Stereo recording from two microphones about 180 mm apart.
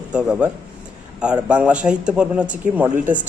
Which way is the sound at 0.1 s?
5° right (ahead or behind).